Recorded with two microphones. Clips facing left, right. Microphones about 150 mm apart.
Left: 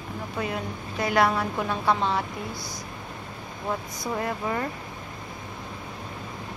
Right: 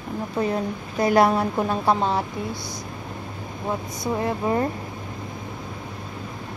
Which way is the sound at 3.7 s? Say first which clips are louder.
Right 3 dB; 20° right (ahead or behind).